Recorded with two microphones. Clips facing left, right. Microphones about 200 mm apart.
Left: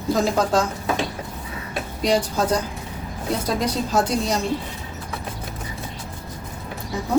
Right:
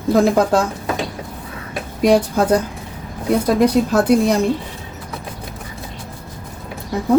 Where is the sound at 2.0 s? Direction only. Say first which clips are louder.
Right 7 dB; 55° right (ahead or behind).